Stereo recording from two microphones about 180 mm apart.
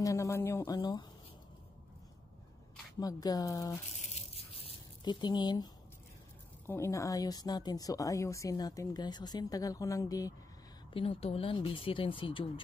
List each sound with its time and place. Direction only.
0.0 s speech: 15° left (ahead or behind)
3.0 s speech: 20° left (ahead or behind)
3.9 s a sound: 35° left (ahead or behind)
6.7 s speech: 15° left (ahead or behind)
10.9 s speech: 30° left (ahead or behind)